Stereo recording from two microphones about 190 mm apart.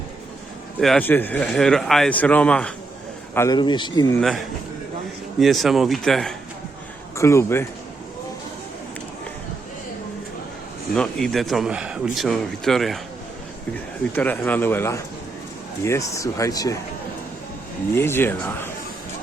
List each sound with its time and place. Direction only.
0.8 s speech: 5° left (ahead or behind)
3.3 s speech: 20° left (ahead or behind)
4.2 s a man's voice: centre (ahead or behind)
7.2 s speech: 15° left (ahead or behind)
10.9 s a man's voice: 5° left (ahead or behind)
14.2 s speech: 10° left (ahead or behind)
17.9 s speech: 10° left (ahead or behind)